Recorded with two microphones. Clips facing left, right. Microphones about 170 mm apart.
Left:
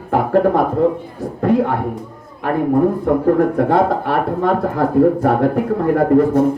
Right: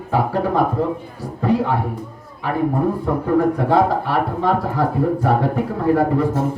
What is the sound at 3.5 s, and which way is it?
A man's voice, 55° left (ahead or behind).